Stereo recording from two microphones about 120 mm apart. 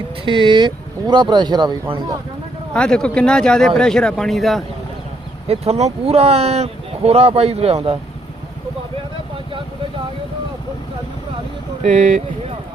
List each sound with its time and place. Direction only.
0.3 s speech: 40° right (ahead or behind)
2.7 s speech: 5° left (ahead or behind)
5.5 s speech: 60° right (ahead or behind)
11.8 s speech: 90° right